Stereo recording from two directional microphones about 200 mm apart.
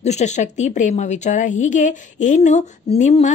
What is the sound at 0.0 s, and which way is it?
A woman's voice, 35° left (ahead or behind).